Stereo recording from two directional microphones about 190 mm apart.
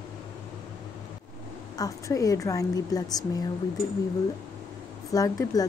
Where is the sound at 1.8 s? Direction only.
20° left (ahead or behind).